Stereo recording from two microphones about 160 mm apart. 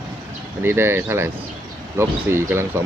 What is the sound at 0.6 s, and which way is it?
Speech, 15° right (ahead or behind).